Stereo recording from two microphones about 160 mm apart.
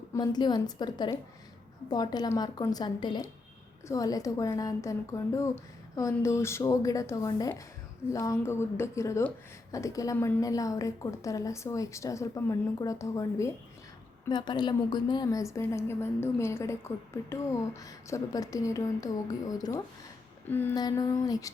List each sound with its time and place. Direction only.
0.1 s a woman's voice: 25° left (ahead or behind)
20.7 s a woman's voice: 25° left (ahead or behind)